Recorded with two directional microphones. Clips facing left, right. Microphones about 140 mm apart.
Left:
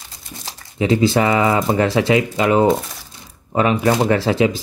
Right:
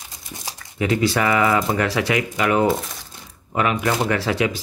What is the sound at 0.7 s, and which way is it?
Speech, 25° left (ahead or behind).